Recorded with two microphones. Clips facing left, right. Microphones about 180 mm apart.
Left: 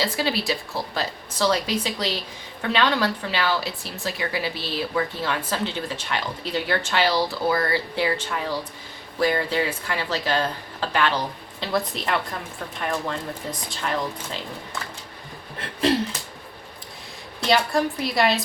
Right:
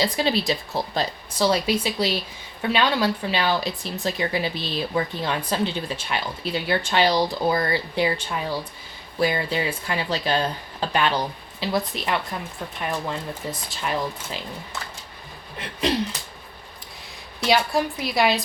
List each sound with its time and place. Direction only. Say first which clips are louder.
0.0 s a woman's voice: right 2 dB; 20° right (ahead or behind)
11.6 s a woman's voice: even; centre (ahead or behind)
17.4 s a woman's voice: even; 5° right (ahead or behind)